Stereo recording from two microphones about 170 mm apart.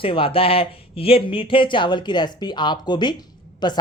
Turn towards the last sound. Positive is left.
turn(degrees=25)  # may be behind; listen again after turning